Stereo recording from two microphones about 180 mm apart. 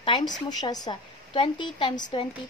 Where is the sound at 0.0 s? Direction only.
25° left (ahead or behind).